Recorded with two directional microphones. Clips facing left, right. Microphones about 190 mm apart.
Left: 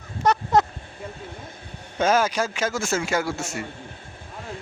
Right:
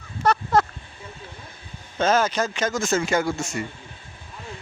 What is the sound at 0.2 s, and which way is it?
Honk, 20° left (ahead or behind).